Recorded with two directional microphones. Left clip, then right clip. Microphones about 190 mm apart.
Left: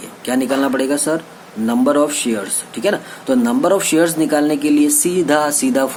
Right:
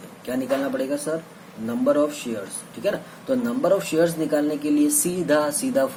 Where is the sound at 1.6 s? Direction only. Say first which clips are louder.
Left 6 dB; 35° left (ahead or behind).